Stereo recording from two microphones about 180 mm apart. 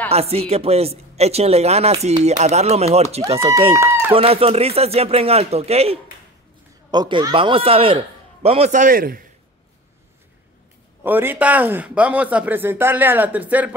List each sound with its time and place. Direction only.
0.1 s a man's voice: 35° right (ahead or behind); by 9.2 s 50° right (ahead or behind)
11.1 s speech: 10° right (ahead or behind)